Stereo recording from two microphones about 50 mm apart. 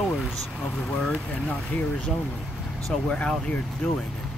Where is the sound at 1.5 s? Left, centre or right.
Left.